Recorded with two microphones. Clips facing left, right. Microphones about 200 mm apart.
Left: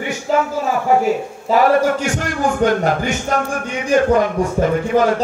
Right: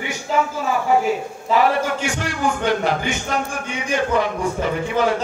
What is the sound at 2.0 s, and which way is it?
Music, 45° left (ahead or behind).